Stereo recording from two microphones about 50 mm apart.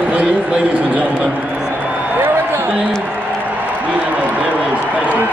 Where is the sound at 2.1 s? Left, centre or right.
Right.